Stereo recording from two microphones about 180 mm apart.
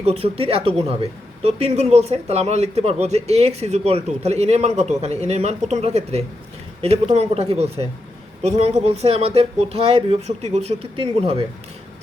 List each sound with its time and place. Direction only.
0.0 s speech: 35° right (ahead or behind)